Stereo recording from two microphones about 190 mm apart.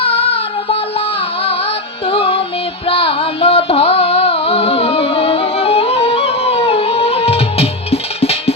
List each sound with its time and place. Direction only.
0.0 s music: 30° left (ahead or behind)
2.0 s music: 30° left (ahead or behind)
2.9 s carnatic music: 30° left (ahead or behind)